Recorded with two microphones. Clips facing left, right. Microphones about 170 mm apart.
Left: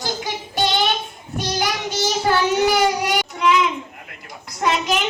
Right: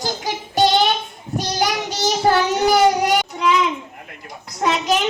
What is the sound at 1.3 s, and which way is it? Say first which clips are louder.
Child singing: right 2 dB; 40° right (ahead or behind).